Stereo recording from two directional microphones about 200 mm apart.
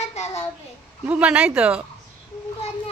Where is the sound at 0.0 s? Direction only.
35° left (ahead or behind).